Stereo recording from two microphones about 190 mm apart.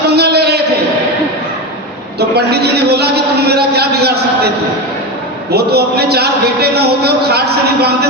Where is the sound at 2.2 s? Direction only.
60° right (ahead or behind).